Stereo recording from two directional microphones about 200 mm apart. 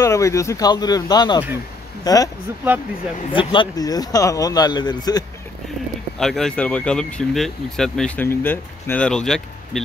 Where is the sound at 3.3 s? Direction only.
20° left (ahead or behind).